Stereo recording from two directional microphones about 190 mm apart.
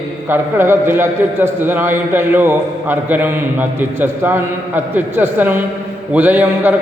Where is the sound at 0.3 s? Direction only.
10° right (ahead or behind).